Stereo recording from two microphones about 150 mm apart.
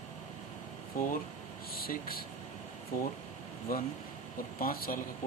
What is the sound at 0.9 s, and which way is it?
Speech, 65° left (ahead or behind).